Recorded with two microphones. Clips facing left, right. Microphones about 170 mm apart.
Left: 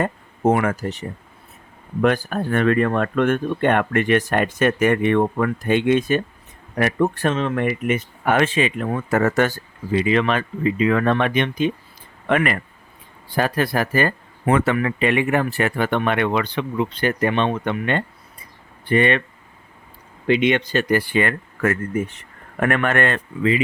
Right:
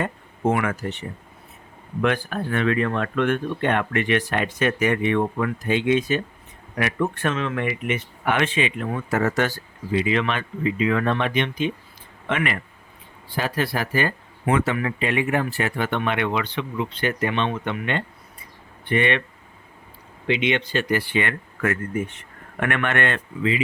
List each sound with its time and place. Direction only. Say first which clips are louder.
0.0 s speech: left 4 dB; 40° left (ahead or behind)
6.7 s speech: left 5 dB; 40° left (ahead or behind)
20.2 s speech: left 5 dB; 45° left (ahead or behind)